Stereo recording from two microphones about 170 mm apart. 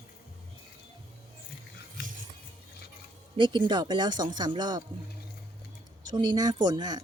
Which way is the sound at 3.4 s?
30° right (ahead or behind).